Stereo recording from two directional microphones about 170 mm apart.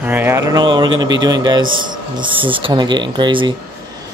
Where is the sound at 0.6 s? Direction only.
25° right (ahead or behind).